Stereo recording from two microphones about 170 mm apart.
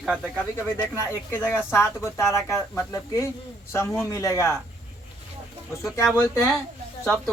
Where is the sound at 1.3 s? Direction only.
10° left (ahead or behind).